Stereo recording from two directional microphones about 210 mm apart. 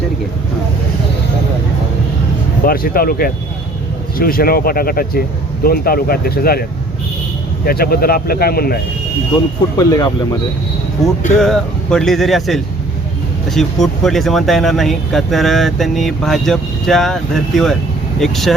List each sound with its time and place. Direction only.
2.6 s speech: 45° left (ahead or behind)
9.7 s speech: 20° left (ahead or behind)
11.3 s speech: centre (ahead or behind)